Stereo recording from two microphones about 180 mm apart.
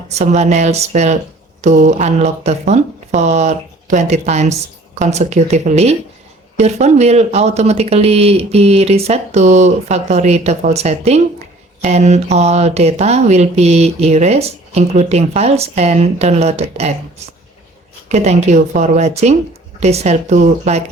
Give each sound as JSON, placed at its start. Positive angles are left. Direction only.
{"t": 0.1, "sound": "speech", "side_deg": -40}
{"t": 18.1, "sound": "speech", "side_deg": -40}